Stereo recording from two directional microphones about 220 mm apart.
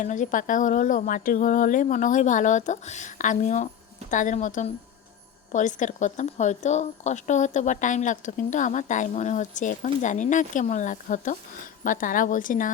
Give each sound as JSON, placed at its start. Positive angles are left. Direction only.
{"t": 0.0, "sound": "speech", "side_deg": 35}